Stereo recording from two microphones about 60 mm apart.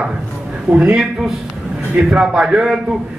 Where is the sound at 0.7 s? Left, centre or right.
Centre.